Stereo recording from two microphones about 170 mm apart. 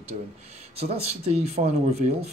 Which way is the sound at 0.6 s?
35° right (ahead or behind).